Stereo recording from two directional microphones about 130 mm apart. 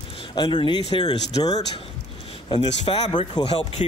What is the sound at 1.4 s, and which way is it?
Speech, 55° left (ahead or behind).